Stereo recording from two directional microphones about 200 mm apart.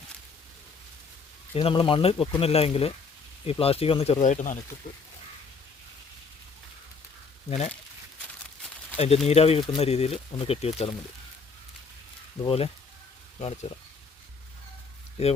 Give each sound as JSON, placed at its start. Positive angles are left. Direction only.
{"t": 1.5, "sound": "speech", "side_deg": 25}
{"t": 9.0, "sound": "speech", "side_deg": 30}
{"t": 12.5, "sound": "speech", "side_deg": 30}